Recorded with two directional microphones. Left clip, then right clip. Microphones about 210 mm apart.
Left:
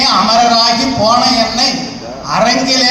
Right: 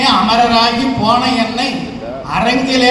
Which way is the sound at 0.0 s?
30° left (ahead or behind).